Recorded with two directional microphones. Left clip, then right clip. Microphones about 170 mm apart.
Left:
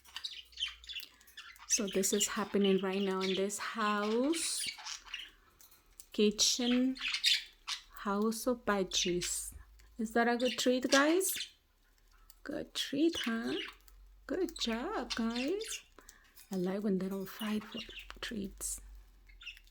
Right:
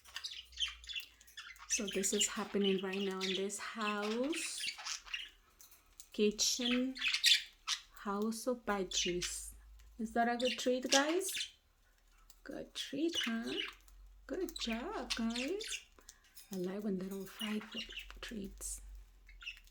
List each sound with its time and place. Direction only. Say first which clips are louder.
0.0 s bird: left 2 dB; 15° right (ahead or behind)
1.7 s speech: left 4 dB; 45° left (ahead or behind)
4.6 s bathtub: even; 30° right (ahead or behind)
6.1 s speech: left 4 dB; 45° left (ahead or behind)
7.0 s squawk: right 1 dB; 25° right (ahead or behind)
7.9 s speech: left 5 dB; 45° left (ahead or behind)
12.4 s speech: left 6 dB; 50° left (ahead or behind)
15.3 s speech: left 3 dB; 30° right (ahead or behind)
16.5 s speech: left 5 dB; 45° left (ahead or behind)